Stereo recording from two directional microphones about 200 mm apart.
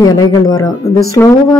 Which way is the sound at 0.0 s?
20° left (ahead or behind).